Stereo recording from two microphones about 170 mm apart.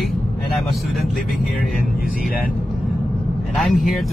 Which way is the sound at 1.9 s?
55° left (ahead or behind).